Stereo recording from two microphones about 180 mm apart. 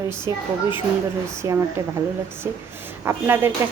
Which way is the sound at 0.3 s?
15° right (ahead or behind).